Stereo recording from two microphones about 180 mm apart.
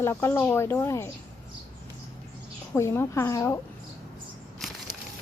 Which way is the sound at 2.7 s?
15° left (ahead or behind).